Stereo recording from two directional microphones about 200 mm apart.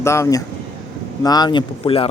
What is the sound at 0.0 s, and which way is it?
A man's voice, 15° left (ahead or behind).